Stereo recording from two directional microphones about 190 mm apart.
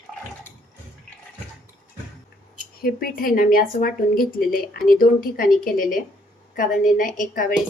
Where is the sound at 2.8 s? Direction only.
50° left (ahead or behind).